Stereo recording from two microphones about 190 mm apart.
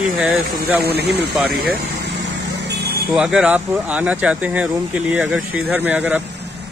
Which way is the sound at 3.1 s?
5° right (ahead or behind).